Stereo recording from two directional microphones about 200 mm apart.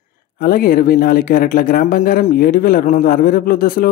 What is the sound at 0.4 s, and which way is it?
Speech, 45° left (ahead or behind).